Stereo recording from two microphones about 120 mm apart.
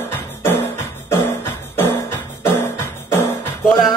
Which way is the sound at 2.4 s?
20° left (ahead or behind).